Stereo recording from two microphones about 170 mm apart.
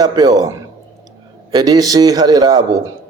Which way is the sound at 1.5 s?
20° right (ahead or behind).